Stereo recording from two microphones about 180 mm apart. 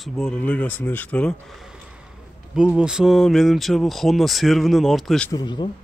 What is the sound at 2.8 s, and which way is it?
Speech, 5° right (ahead or behind).